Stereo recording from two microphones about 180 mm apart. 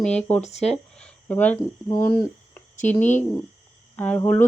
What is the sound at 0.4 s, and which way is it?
Speech, 40° left (ahead or behind).